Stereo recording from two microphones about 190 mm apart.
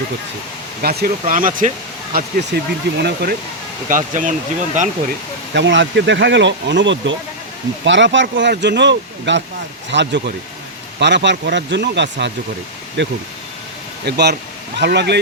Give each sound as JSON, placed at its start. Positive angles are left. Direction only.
{"t": 0.8, "sound": "speech", "side_deg": -55}
{"t": 3.8, "sound": "speech", "side_deg": -45}
{"t": 5.5, "sound": "speech", "side_deg": -70}